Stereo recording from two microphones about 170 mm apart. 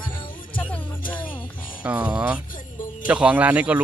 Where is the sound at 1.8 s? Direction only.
10° right (ahead or behind).